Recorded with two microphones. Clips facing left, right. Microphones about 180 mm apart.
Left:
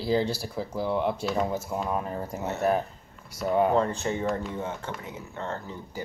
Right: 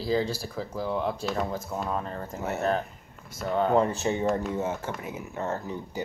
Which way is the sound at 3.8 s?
20° right (ahead or behind).